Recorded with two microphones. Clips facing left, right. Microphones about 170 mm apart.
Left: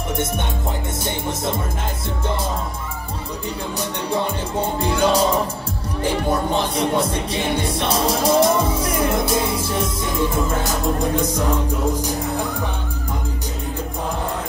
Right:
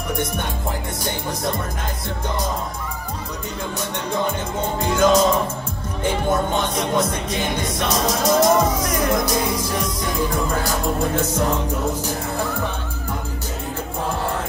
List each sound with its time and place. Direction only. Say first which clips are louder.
4.7 s music: right 3 dB; 30° left (ahead or behind)
6.3 s music: even; 35° left (ahead or behind)
11.1 s music: even; 15° left (ahead or behind)